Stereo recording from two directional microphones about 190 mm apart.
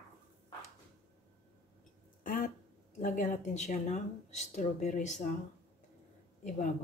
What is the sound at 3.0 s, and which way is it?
Speech, 45° left (ahead or behind).